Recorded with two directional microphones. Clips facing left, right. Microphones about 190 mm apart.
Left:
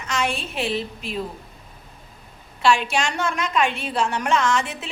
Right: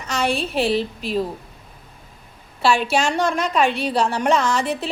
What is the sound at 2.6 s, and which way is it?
A woman's voice, 35° right (ahead or behind).